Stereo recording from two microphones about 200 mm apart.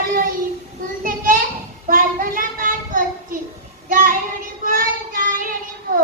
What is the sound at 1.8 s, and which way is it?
Child singing, 45° right (ahead or behind).